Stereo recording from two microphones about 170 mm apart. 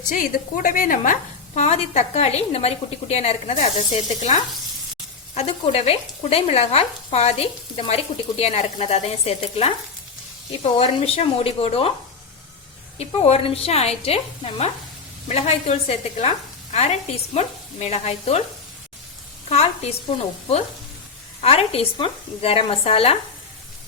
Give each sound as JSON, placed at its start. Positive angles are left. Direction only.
{"t": 0.1, "sound": "speech", "side_deg": 50}
{"t": 4.1, "sound": "sizzle", "side_deg": 45}
{"t": 5.3, "sound": "speech", "side_deg": 35}
{"t": 13.0, "sound": "speech", "side_deg": 35}
{"t": 19.5, "sound": "speech", "side_deg": 40}